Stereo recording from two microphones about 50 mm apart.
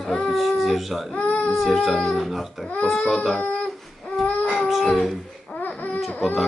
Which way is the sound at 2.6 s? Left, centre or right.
Left.